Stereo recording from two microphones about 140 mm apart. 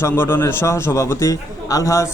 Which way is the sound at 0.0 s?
15° left (ahead or behind).